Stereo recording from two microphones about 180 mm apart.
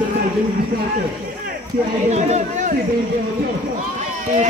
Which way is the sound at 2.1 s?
40° right (ahead or behind).